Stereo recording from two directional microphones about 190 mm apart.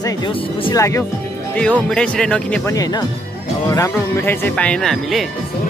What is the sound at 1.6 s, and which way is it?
Speech, 5° left (ahead or behind).